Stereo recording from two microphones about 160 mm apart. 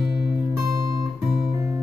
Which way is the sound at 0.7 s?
20° right (ahead or behind).